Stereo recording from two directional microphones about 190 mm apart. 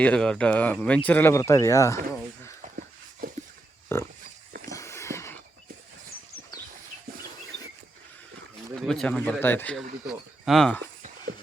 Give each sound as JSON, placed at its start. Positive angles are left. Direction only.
{"t": 0.0, "sound": "speech", "side_deg": 5}
{"t": 2.7, "sound": "a sound", "side_deg": -50}
{"t": 3.9, "sound": "pig", "side_deg": 15}
{"t": 4.6, "sound": "a sound", "side_deg": 15}
{"t": 8.7, "sound": "speech", "side_deg": 5}
{"t": 10.1, "sound": "speech", "side_deg": 0}